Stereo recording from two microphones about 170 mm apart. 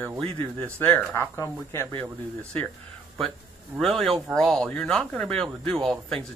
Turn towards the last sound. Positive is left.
turn(degrees=5)  # may be behind; listen again after turning